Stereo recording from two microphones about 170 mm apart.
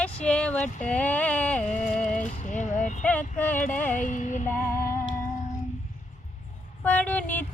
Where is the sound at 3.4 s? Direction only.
10° left (ahead or behind).